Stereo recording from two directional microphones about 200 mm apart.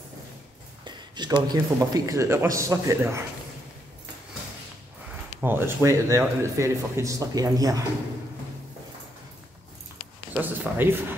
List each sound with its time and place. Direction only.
0.8 s speech: 20° right (ahead or behind)
5.4 s speech: 10° right (ahead or behind)
10.3 s speech: 10° right (ahead or behind)